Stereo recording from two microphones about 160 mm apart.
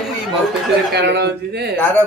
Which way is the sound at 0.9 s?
90° right.